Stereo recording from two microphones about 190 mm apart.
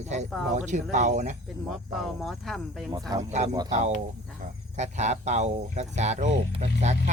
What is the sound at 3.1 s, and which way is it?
Speech, 20° right (ahead or behind).